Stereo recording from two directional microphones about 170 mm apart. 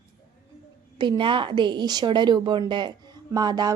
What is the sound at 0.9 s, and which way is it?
A woman's voice, 25° right (ahead or behind).